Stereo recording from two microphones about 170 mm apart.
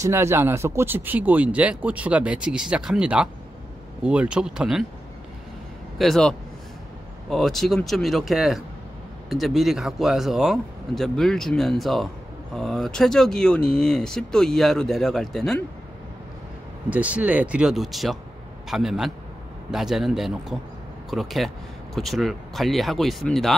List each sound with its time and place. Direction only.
0.0 s speech: 15° right (ahead or behind)
5.9 s speech: centre (ahead or behind)
16.9 s speech: 10° right (ahead or behind)